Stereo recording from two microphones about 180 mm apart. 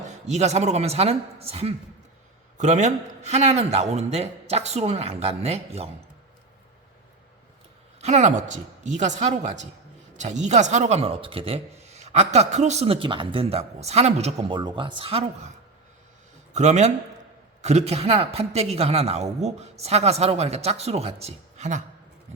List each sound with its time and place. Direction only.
0.3 s speech: 40° right (ahead or behind)
8.0 s speech: 40° right (ahead or behind)
16.6 s speech: 40° right (ahead or behind)